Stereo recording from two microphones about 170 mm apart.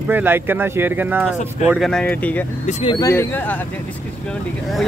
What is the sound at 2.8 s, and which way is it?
Speech, 25° left (ahead or behind).